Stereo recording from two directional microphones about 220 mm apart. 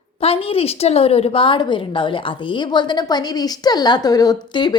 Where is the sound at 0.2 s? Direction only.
25° left (ahead or behind).